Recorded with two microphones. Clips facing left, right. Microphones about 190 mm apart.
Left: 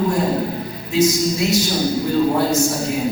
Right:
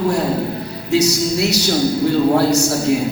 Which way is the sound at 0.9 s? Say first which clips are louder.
Right 1 dB; 75° right (ahead or behind).